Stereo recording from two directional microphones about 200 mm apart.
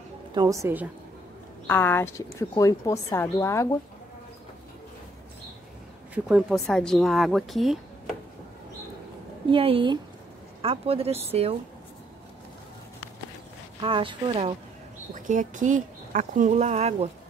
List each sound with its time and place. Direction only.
0.3 s a woman's voice: 20° right (ahead or behind)
1.7 s a woman's voice: 10° left (ahead or behind)
6.1 s speech: 5° right (ahead or behind)
9.5 s speech: 25° right (ahead or behind)
13.7 s speech: 25° right (ahead or behind)
15.1 s speech: 40° right (ahead or behind)